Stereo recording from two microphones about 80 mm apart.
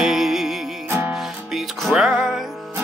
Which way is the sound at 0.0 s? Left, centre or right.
Centre.